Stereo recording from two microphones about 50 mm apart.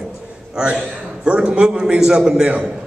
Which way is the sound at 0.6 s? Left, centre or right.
Centre.